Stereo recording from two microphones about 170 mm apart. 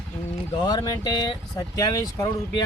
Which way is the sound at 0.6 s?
25° left (ahead or behind).